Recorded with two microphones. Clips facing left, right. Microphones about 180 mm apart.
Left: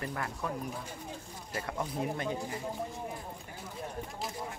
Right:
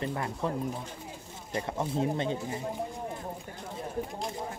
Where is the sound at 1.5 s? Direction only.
25° right (ahead or behind).